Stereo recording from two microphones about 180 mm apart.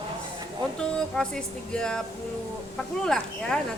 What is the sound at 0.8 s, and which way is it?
Speech, 5° left (ahead or behind).